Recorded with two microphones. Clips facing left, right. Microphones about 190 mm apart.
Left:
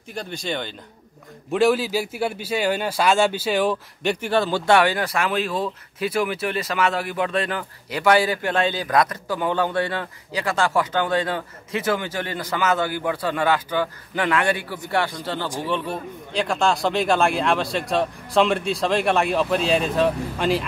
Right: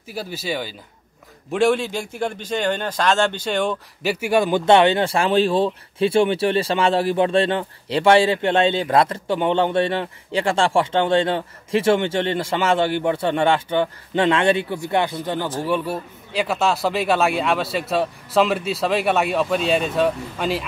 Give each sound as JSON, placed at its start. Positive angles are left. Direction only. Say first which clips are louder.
{"t": 0.1, "sound": "speech", "louder": "right 2 dB", "side_deg": -5}
{"t": 15.6, "sound": "speech", "louder": "right 3 dB", "side_deg": -10}